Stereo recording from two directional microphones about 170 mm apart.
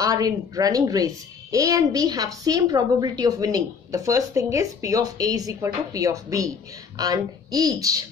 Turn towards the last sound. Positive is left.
turn(degrees=-20)  # may be behind; listen again after turning